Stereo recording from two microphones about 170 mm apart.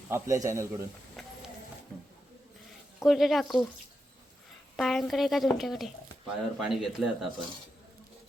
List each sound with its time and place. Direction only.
0.1 s a man's voice: 15° right (ahead or behind)
1.2 s music: centre (ahead or behind)
3.0 s speech: centre (ahead or behind)
4.8 s speech: centre (ahead or behind)